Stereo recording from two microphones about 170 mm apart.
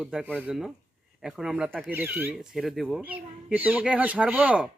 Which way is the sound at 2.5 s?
Centre (ahead or behind).